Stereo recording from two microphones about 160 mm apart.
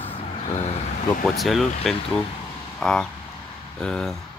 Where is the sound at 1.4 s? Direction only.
Centre (ahead or behind).